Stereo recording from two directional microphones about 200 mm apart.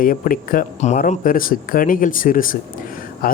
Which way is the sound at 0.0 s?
45° left (ahead or behind).